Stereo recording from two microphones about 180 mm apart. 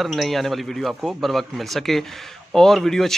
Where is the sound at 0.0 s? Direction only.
Centre (ahead or behind).